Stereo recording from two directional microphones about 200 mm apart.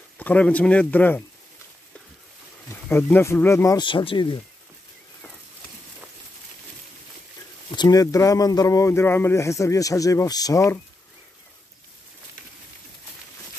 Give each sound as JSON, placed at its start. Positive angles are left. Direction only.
{"t": 0.2, "sound": "speech", "side_deg": 5}
{"t": 2.9, "sound": "speech", "side_deg": 10}
{"t": 7.7, "sound": "speech", "side_deg": 20}